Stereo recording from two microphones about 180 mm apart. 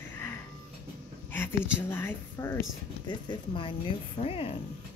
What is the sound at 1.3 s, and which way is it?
A woman's voice, 10° left (ahead or behind).